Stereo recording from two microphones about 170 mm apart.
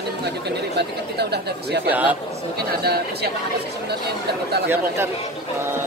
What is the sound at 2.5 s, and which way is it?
Speech, 70° right (ahead or behind).